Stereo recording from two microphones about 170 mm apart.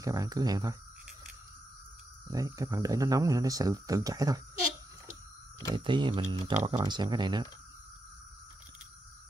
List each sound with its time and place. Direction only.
0.0 s speech: 20° right (ahead or behind)
2.3 s speech: 20° right (ahead or behind)
5.9 s speech: 25° right (ahead or behind)